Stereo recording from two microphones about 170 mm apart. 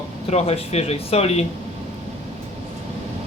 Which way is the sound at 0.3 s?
35° left (ahead or behind).